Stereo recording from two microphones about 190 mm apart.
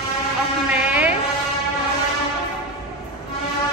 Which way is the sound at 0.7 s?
10° right (ahead or behind).